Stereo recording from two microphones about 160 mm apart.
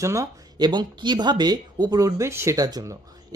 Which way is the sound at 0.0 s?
20° right (ahead or behind).